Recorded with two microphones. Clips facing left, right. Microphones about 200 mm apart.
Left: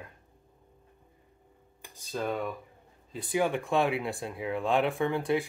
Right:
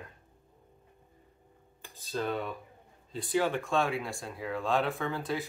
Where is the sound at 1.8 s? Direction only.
15° left (ahead or behind).